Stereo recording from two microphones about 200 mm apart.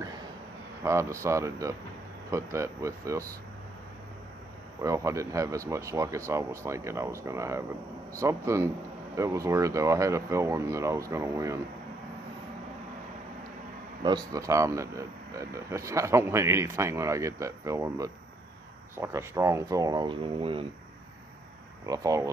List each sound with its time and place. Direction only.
0.8 s speech: 15° right (ahead or behind)
4.8 s speech: 15° right (ahead or behind)
14.0 s speech: 20° right (ahead or behind)
21.8 s speech: 15° right (ahead or behind)